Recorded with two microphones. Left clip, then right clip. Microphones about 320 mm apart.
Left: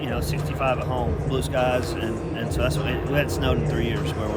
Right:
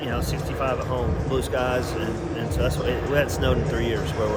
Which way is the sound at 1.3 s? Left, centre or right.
Centre.